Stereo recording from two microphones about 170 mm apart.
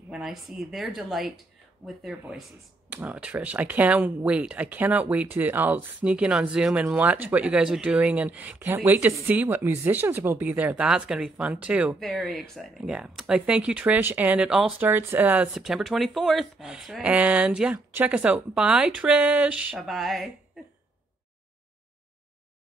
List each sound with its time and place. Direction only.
0.1 s speech: centre (ahead or behind)